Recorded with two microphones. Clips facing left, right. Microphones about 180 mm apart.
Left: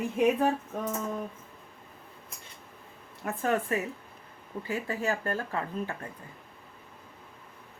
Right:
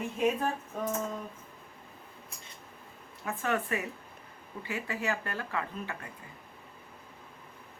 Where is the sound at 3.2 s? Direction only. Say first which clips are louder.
Left 3 dB; 40° left (ahead or behind).